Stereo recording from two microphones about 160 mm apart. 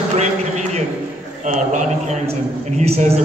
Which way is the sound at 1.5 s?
50° right (ahead or behind).